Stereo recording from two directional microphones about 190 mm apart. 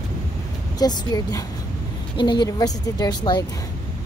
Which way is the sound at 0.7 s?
20° left (ahead or behind).